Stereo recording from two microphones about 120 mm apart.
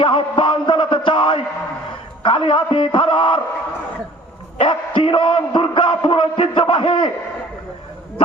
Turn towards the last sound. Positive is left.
turn(degrees=50)  # may be behind; listen again after turning